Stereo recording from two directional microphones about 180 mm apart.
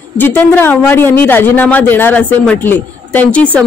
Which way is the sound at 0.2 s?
10° left (ahead or behind).